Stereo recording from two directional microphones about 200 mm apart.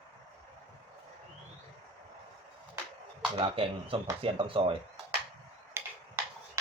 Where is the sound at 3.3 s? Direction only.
25° right (ahead or behind).